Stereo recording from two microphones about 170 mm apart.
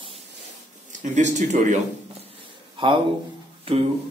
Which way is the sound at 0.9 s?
45° right (ahead or behind).